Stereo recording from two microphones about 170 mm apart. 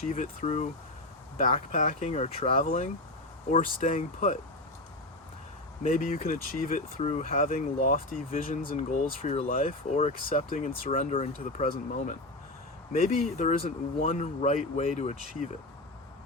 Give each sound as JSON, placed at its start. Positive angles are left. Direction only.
{"t": 0.1, "sound": "speech", "side_deg": 45}
{"t": 5.8, "sound": "speech", "side_deg": 50}